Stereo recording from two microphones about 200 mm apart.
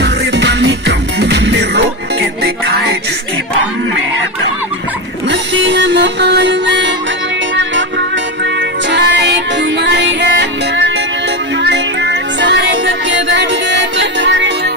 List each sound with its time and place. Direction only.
0.0 s music: 60° right (ahead or behind)
5.3 s music: 65° right (ahead or behind)
8.9 s music: 60° right (ahead or behind)